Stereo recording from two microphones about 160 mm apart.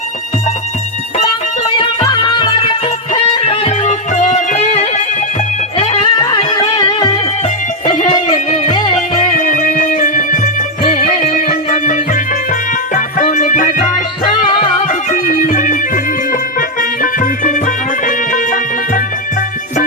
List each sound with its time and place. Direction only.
1.6 s music: 35° left (ahead or behind)
3.1 s music: 40° left (ahead or behind)
8.3 s music: 30° left (ahead or behind)
9.5 s music: 50° left (ahead or behind)